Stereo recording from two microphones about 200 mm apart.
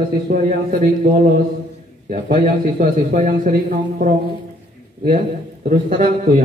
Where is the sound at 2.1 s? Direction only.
40° right (ahead or behind).